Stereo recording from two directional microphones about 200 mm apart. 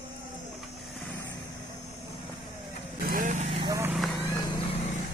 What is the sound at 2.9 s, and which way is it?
Vehicle, 45° right (ahead or behind).